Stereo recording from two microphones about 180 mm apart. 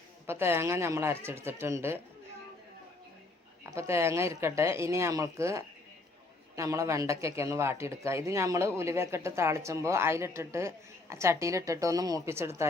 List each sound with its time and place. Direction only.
0.3 s speech: 15° right (ahead or behind)
3.7 s speech: 15° right (ahead or behind)